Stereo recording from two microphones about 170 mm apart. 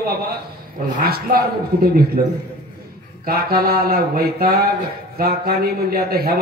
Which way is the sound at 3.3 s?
60° right (ahead or behind).